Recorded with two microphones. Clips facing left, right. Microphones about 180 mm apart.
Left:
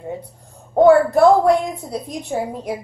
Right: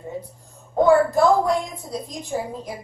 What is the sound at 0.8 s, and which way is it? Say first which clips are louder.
A woman's voice: left 5 dB; 65° left (ahead or behind).